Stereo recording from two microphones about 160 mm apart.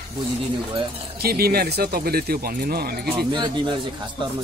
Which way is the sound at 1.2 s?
75° right (ahead or behind).